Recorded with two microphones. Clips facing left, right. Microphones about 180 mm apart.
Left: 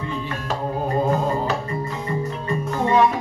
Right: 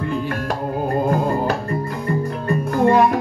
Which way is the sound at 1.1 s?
50° right (ahead or behind).